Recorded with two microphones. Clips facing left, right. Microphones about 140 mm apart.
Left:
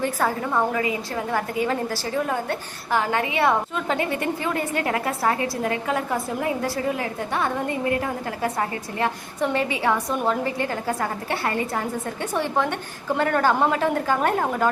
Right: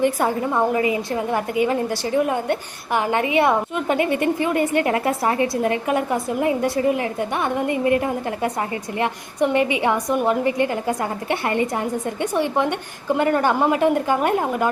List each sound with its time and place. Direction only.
0.0 s a woman's voice: 20° right (ahead or behind)